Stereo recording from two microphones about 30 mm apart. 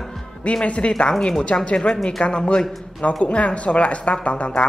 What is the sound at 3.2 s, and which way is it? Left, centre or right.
Speech, left.